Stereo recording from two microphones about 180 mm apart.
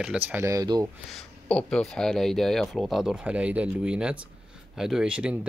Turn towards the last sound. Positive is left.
turn(degrees=-5)  # may be behind; listen again after turning